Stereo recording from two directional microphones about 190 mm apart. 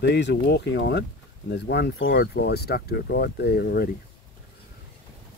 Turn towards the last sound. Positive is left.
turn(degrees=55)  # may be behind; listen again after turning